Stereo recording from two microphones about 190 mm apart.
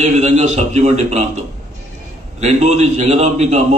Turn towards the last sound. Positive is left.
turn(degrees=-35)  # may be behind; listen again after turning